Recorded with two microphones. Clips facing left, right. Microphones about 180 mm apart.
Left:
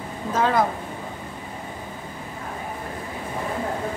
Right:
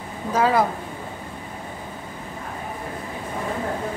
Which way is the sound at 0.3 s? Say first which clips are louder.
Right 2 dB; 5° right (ahead or behind).